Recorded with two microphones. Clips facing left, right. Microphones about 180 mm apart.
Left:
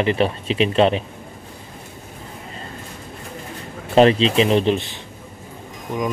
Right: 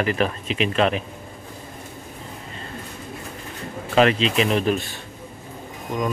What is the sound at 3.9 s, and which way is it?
Speech, 30° left (ahead or behind).